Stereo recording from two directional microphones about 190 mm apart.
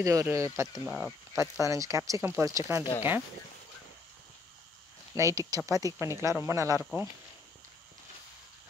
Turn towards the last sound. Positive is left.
turn(degrees=-15)  # may be behind; listen again after turning